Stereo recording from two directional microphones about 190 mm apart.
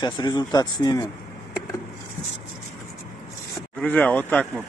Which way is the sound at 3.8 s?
5° left (ahead or behind).